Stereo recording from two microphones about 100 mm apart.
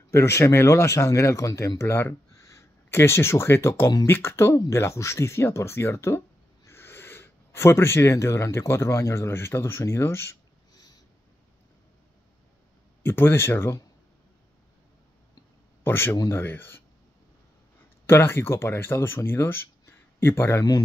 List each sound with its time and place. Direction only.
0.1 s speech: 30° left (ahead or behind)
10.7 s a sound: 40° left (ahead or behind)
13.0 s speech: 20° left (ahead or behind)
15.8 s speech: 25° left (ahead or behind)
18.0 s speech: 25° left (ahead or behind)